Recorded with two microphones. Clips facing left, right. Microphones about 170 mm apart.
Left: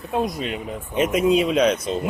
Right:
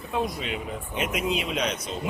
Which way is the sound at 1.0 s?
40° left (ahead or behind).